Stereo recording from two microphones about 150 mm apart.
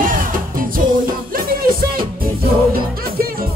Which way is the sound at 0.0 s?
65° right (ahead or behind).